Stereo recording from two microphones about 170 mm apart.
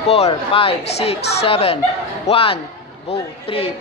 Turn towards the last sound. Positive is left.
turn(degrees=35)  # may be behind; listen again after turning